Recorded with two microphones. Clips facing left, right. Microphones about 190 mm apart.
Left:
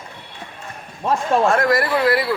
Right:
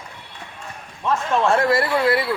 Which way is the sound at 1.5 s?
30° right (ahead or behind).